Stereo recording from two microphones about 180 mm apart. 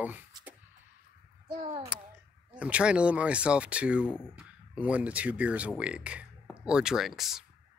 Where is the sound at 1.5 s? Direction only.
25° right (ahead or behind).